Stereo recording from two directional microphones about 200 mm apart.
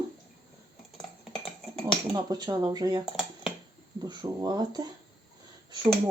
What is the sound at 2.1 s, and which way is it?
Speech, 20° right (ahead or behind).